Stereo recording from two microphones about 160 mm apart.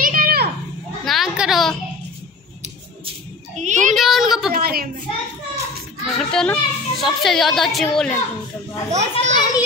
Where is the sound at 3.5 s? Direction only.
50° right (ahead or behind).